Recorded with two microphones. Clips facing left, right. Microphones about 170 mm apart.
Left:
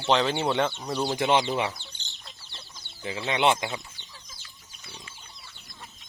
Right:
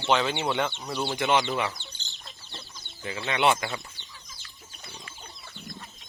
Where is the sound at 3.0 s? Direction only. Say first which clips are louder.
Left 1 dB; 25° left (ahead or behind).